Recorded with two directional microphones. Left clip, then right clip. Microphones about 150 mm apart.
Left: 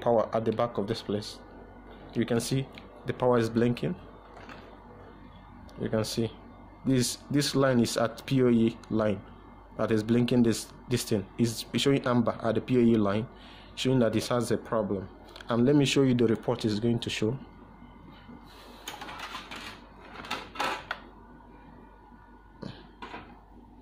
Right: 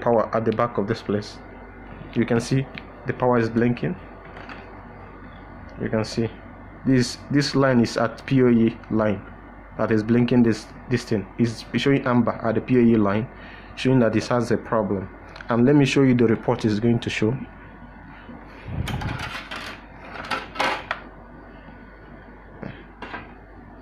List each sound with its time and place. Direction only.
0.0 s speech: 10° left (ahead or behind)
3.1 s speech: 20° left (ahead or behind)
5.8 s speech: 20° left (ahead or behind); by 17.4 s 5° left (ahead or behind)